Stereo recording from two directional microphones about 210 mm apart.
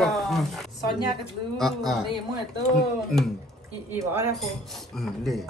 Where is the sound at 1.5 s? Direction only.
Centre (ahead or behind).